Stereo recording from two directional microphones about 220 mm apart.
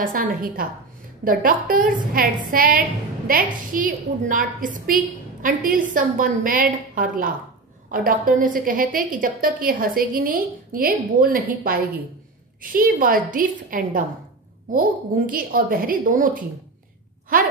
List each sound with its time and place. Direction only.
0.0 s a woman's voice: 40° right (ahead or behind)
15.2 s a woman's voice: 40° right (ahead or behind)